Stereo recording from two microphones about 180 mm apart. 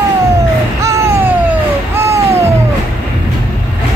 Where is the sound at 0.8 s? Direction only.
15° right (ahead or behind).